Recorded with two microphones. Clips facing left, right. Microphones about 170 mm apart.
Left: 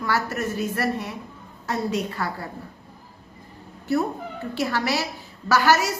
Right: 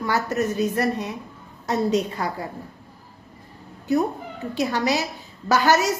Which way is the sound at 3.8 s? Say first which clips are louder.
Right 2 dB; 15° right (ahead or behind).